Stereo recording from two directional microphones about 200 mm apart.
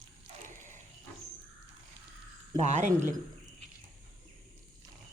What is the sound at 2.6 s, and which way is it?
Speech, 35° right (ahead or behind).